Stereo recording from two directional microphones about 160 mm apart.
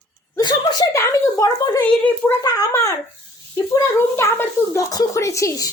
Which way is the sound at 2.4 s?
20° left (ahead or behind).